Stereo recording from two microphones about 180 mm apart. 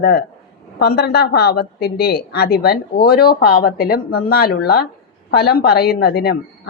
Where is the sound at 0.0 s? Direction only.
65° left (ahead or behind).